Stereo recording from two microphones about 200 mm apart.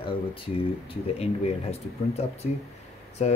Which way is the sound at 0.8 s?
30° left (ahead or behind).